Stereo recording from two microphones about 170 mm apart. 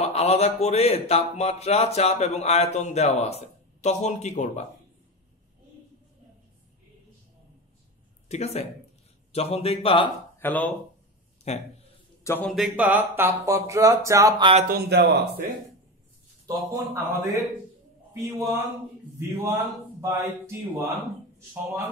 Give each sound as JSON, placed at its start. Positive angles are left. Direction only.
{"t": 0.0, "sound": "speech", "side_deg": 40}
{"t": 8.3, "sound": "speech", "side_deg": 40}
{"t": 10.4, "sound": "speech", "side_deg": 10}
{"t": 11.5, "sound": "speech", "side_deg": 40}
{"t": 12.2, "sound": "a sound", "side_deg": 15}
{"t": 12.4, "sound": "speech", "side_deg": 0}
{"t": 14.7, "sound": "a man's voice", "side_deg": -70}
{"t": 16.4, "sound": "a man's voice", "side_deg": -20}
{"t": 19.1, "sound": "speech", "side_deg": -15}